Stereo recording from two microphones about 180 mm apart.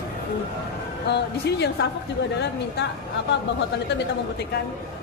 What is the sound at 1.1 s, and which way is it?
Speech, 70° left (ahead or behind).